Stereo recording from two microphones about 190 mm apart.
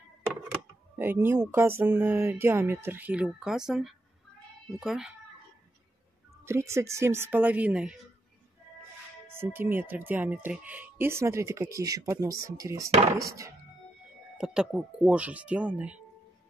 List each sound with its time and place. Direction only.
0.9 s speech: 10° right (ahead or behind)
6.4 s speech: 15° right (ahead or behind)
9.3 s speech: 10° right (ahead or behind)
14.4 s speech: 5° right (ahead or behind)